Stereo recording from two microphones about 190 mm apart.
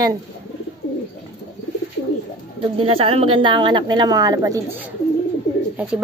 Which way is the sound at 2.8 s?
30° right (ahead or behind).